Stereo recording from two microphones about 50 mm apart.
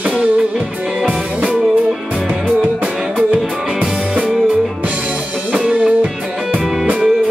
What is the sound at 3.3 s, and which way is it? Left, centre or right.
Music, right.